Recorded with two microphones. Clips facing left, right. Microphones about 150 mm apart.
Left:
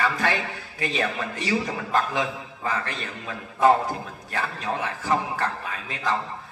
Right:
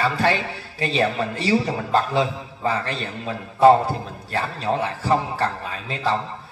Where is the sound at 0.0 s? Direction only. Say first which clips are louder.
Right 4 dB; 30° right (ahead or behind).